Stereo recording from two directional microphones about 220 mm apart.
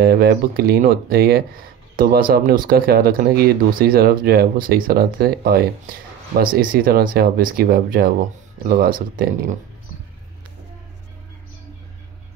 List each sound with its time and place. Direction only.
0.0 s speech: 45° right (ahead or behind)